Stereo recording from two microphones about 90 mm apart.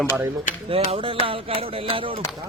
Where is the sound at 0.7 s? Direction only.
90° right.